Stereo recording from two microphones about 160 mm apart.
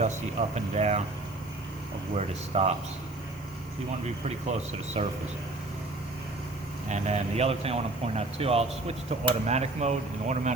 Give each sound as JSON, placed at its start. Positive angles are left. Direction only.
{"t": 0.0, "sound": "speech", "side_deg": -45}
{"t": 2.1, "sound": "speech", "side_deg": -40}
{"t": 5.0, "sound": "speech", "side_deg": -40}
{"t": 6.8, "sound": "speech", "side_deg": -45}